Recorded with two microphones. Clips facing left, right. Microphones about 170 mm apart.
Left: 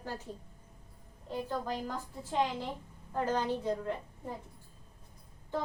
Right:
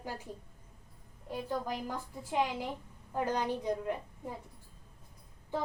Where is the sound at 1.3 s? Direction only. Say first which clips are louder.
Even; 10° right (ahead or behind).